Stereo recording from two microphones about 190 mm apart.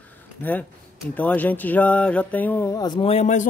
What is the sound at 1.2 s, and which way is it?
Speech, 10° left (ahead or behind).